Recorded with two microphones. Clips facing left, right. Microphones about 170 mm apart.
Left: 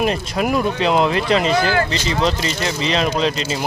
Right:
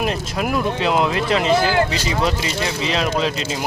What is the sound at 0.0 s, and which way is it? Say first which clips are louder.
Speech: left 3 dB; centre (ahead or behind).